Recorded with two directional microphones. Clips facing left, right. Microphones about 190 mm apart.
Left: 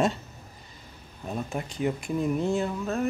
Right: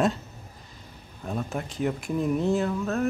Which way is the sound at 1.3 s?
5° left (ahead or behind).